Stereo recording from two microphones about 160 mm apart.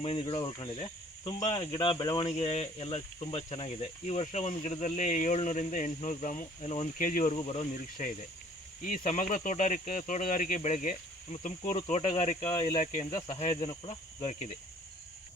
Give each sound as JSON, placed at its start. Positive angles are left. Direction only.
{"t": 0.0, "sound": "cricket", "side_deg": 35}
{"t": 1.5, "sound": "speech", "side_deg": 35}
{"t": 7.0, "sound": "speech", "side_deg": 55}
{"t": 7.3, "sound": "speech", "side_deg": 35}
{"t": 8.8, "sound": "speech", "side_deg": 55}
{"t": 13.1, "sound": "cricket", "side_deg": 25}
{"t": 13.4, "sound": "speech", "side_deg": 35}